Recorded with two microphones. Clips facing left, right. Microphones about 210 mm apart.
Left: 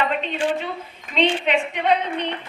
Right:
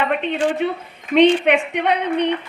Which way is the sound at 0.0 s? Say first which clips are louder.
Right 3 dB; 55° right (ahead or behind).